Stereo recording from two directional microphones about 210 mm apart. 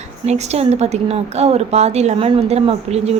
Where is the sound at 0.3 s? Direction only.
30° right (ahead or behind).